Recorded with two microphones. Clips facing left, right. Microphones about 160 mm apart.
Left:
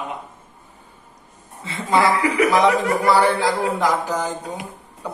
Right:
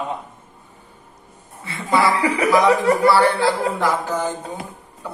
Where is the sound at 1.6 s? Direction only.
20° left (ahead or behind).